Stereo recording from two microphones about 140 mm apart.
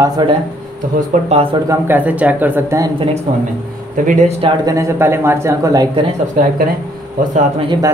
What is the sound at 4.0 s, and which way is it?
Speech, 70° right (ahead or behind).